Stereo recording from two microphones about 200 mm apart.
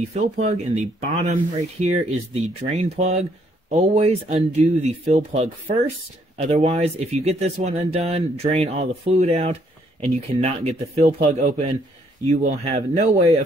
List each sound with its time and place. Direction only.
0.1 s speech: 35° right (ahead or behind)
11.0 s a man's voice: 50° right (ahead or behind)
11.3 s speech: 35° right (ahead or behind)